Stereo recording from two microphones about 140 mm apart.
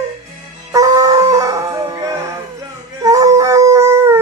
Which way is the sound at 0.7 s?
25° right (ahead or behind).